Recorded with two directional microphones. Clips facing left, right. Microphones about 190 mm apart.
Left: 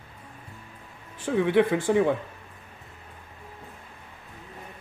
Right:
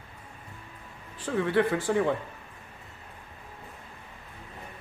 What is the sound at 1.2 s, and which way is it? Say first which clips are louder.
Speech: left 4 dB; 15° left (ahead or behind).